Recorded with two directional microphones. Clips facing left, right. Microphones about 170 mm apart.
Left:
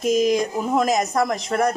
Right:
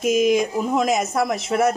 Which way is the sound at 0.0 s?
Centre (ahead or behind).